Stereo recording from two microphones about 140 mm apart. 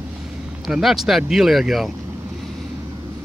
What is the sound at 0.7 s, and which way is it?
Speech, 5° right (ahead or behind).